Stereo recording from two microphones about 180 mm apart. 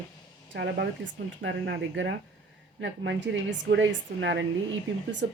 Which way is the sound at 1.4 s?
85° right.